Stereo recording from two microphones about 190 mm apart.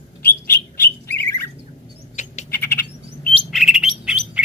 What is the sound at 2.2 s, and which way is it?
Bird, 40° left (ahead or behind).